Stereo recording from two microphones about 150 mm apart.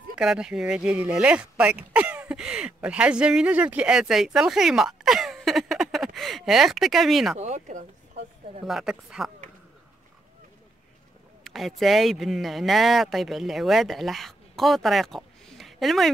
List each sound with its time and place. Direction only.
0.1 s speech: 5° right (ahead or behind)
7.3 s a sound: 50° right (ahead or behind)
8.6 s a woman's voice: centre (ahead or behind)
11.4 s speech: centre (ahead or behind)